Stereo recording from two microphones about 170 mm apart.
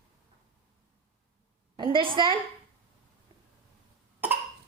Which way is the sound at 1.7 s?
25° right (ahead or behind).